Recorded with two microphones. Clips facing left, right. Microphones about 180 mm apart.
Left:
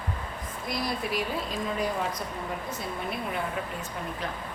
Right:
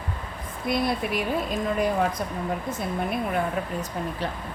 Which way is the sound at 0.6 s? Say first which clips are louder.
Right 6 dB; 55° right (ahead or behind).